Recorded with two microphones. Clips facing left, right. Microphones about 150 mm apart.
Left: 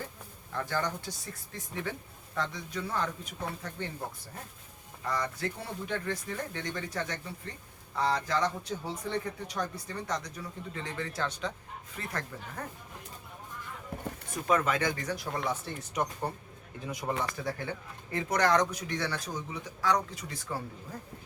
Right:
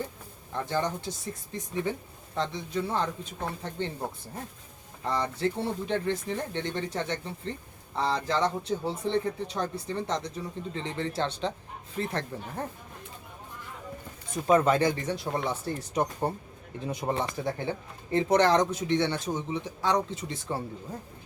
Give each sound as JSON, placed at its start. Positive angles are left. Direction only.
{"t": 0.5, "sound": "a man's voice", "side_deg": -20}
{"t": 5.0, "sound": "a man's voice", "side_deg": -25}
{"t": 14.4, "sound": "a man's voice", "side_deg": -30}